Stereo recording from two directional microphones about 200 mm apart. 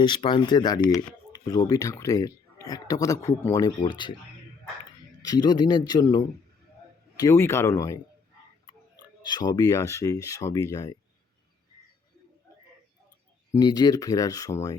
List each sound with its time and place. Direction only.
0.0 s a man's voice: 25° left (ahead or behind)
5.2 s a man's voice: 20° left (ahead or behind)
13.5 s speech: 20° left (ahead or behind)